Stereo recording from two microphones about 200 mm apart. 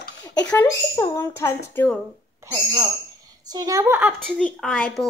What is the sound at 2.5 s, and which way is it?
A woman's voice, 20° right (ahead or behind).